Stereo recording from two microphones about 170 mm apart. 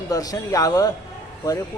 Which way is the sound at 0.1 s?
20° left (ahead or behind).